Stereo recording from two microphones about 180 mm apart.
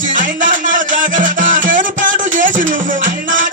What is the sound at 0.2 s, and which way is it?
Music, 45° right (ahead or behind).